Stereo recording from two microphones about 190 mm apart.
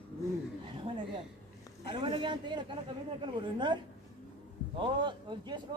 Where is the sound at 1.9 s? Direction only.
25° right (ahead or behind).